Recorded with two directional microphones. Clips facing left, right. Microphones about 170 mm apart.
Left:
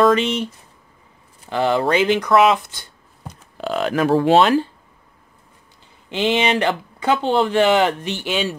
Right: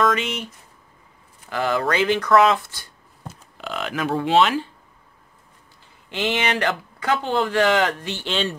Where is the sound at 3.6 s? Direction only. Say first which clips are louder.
Left 7 dB; 40° left (ahead or behind).